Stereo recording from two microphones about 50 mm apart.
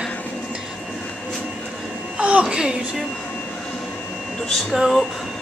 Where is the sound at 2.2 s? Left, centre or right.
Right.